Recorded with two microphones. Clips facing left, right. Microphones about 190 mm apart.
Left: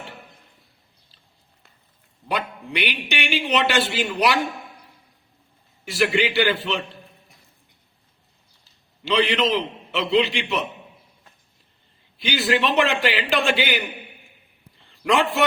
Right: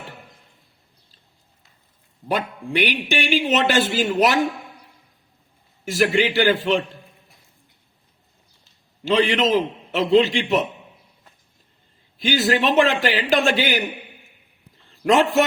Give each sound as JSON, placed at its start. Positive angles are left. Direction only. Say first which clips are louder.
{"t": 2.2, "sound": "a man's voice", "louder": "right 3 dB", "side_deg": -45}
{"t": 5.8, "sound": "a man's voice", "louder": "right 2 dB", "side_deg": -45}
{"t": 9.0, "sound": "a man's voice", "louder": "right 2 dB", "side_deg": -45}
{"t": 12.2, "sound": "a man's voice", "louder": "right 2 dB", "side_deg": -45}
{"t": 14.8, "sound": "a man's voice", "louder": "right 4 dB", "side_deg": -45}